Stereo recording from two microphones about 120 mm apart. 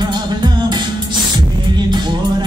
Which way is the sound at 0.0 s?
35° right (ahead or behind).